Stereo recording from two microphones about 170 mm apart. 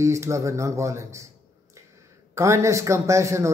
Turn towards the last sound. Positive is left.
turn(degrees=-15)  # may be behind; listen again after turning